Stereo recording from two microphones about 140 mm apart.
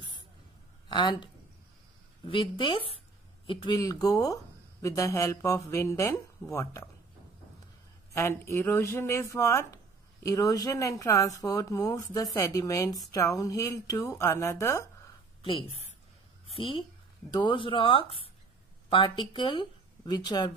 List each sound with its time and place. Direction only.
0.8 s speech: 30° left (ahead or behind)
8.1 s speech: 20° left (ahead or behind)
15.4 s a woman's voice: 40° left (ahead or behind)